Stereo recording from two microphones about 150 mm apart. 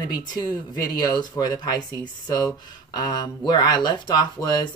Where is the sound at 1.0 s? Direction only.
25° left (ahead or behind).